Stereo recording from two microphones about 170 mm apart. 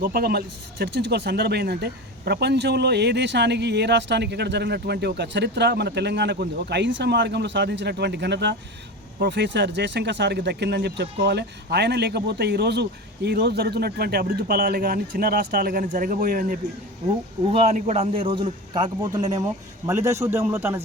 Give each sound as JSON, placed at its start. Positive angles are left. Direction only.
{"t": 0.0, "sound": "speech", "side_deg": -65}
{"t": 9.1, "sound": "speech", "side_deg": -80}
{"t": 17.5, "sound": "a man's voice", "side_deg": -35}